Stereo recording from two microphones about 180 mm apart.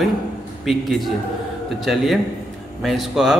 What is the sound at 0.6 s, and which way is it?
A man's voice, centre (ahead or behind).